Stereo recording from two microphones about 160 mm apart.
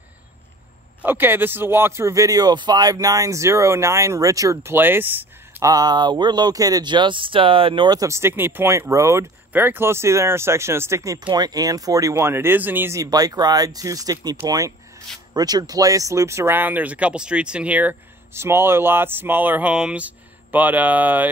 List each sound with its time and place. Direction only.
1.0 s speech: 15° right (ahead or behind)
15.3 s speech: 25° right (ahead or behind)